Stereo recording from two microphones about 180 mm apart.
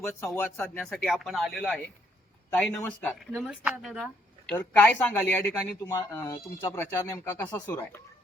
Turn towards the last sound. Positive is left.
turn(degrees=15)  # may be behind; listen again after turning